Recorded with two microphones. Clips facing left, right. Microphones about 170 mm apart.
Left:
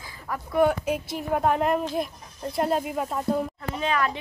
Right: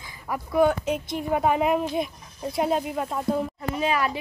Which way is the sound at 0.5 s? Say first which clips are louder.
Right 1 dB; 5° left (ahead or behind).